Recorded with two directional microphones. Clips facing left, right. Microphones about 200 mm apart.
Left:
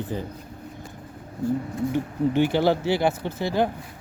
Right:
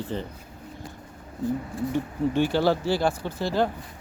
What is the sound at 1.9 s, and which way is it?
Speech, 15° left (ahead or behind).